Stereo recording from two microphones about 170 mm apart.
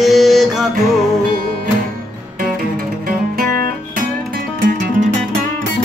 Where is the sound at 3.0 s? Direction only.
55° right (ahead or behind).